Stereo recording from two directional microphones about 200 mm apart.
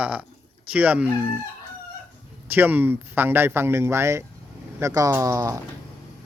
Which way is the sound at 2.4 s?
10° right (ahead or behind).